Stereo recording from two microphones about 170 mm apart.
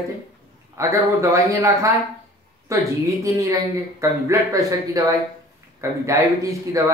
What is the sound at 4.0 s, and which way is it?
Speech, 20° right (ahead or behind).